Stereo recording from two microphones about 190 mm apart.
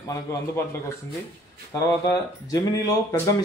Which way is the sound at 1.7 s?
20° left (ahead or behind).